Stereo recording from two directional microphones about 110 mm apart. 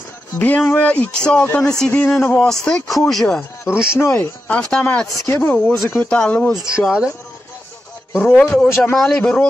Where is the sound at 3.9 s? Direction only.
25° left (ahead or behind).